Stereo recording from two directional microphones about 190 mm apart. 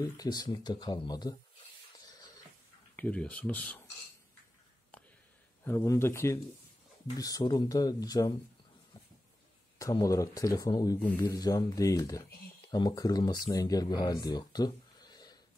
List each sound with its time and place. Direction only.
0.0 s speech: 20° left (ahead or behind)
3.0 s speech: 5° left (ahead or behind)
5.8 s speech: 15° left (ahead or behind)
9.8 s speech: 20° left (ahead or behind)